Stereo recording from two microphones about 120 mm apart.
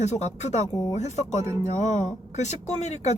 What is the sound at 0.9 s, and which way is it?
Speech, 70° left (ahead or behind).